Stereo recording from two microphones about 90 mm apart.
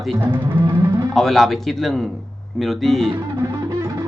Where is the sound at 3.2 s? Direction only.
35° right (ahead or behind).